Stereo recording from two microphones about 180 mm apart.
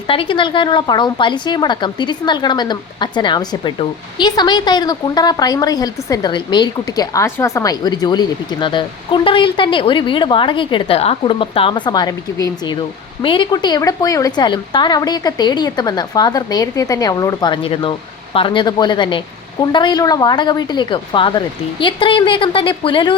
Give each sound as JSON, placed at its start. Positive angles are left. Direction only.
{"t": 0.1, "sound": "a woman's voice", "side_deg": 30}